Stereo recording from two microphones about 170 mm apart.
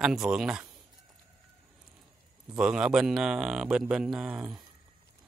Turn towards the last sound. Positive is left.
turn(degrees=-5)  # may be behind; listen again after turning